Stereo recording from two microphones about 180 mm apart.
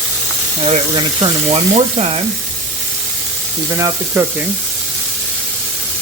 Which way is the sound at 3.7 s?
20° right (ahead or behind).